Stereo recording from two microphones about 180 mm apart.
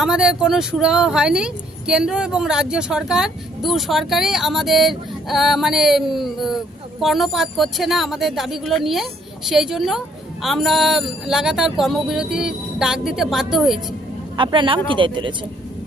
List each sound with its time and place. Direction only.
0.0 s speech: 5° right (ahead or behind)
14.3 s speech: 25° right (ahead or behind)